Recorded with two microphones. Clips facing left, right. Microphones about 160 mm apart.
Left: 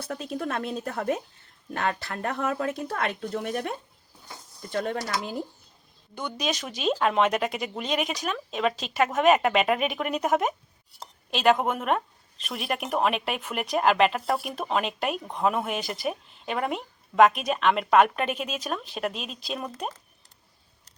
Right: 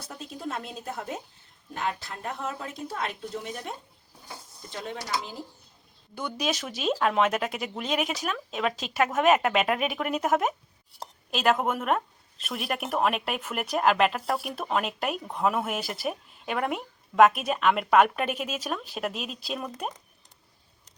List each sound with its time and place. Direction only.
0.0 s speech: 65° left (ahead or behind)
6.1 s speech: 5° right (ahead or behind)